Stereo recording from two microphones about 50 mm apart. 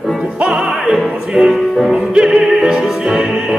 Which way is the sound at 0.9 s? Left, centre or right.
Centre.